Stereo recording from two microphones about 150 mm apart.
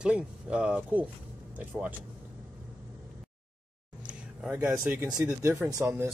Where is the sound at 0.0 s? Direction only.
5° right (ahead or behind).